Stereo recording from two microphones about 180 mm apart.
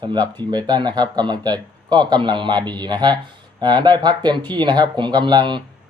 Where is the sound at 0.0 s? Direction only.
25° right (ahead or behind).